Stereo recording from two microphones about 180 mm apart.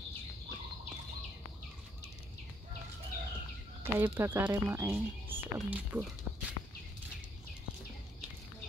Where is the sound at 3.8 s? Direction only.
10° right (ahead or behind).